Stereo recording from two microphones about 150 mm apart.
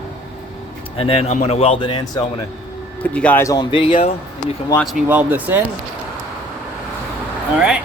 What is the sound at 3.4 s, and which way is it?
Speech, 25° left (ahead or behind).